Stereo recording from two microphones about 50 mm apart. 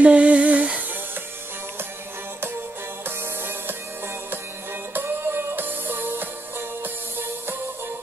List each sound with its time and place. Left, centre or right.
0.0 s music: right
4.9 s music: right